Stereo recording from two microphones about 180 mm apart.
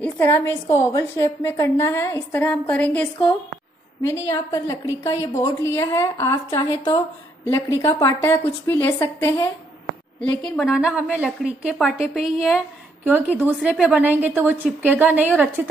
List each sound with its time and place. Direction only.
0.0 s a woman's voice: 10° left (ahead or behind); by 15.4 s 10° right (ahead or behind)